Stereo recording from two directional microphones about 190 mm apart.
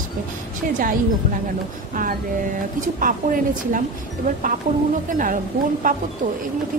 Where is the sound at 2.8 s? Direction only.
45° right (ahead or behind).